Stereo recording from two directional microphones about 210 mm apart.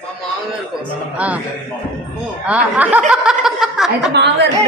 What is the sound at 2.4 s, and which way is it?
A woman's voice, 5° right (ahead or behind).